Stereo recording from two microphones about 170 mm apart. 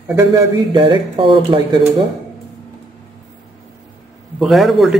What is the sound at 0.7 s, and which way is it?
Speech, 30° right (ahead or behind).